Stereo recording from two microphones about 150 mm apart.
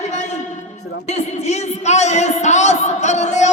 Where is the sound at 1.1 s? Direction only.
45° left (ahead or behind).